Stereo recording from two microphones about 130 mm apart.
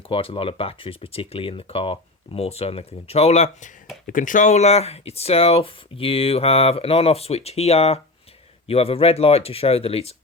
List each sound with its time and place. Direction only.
0.1 s speech: 45° left (ahead or behind); by 3.7 s 65° left (ahead or behind)
4.0 s speech: 90° left; by 10.2 s 50° left (ahead or behind)